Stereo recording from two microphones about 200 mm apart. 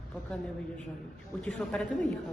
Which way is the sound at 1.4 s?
5° left (ahead or behind).